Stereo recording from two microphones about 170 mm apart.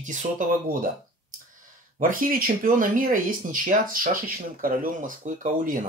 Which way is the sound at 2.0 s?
55° right (ahead or behind).